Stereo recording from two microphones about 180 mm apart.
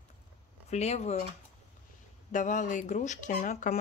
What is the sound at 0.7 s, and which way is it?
Speech, 35° left (ahead or behind).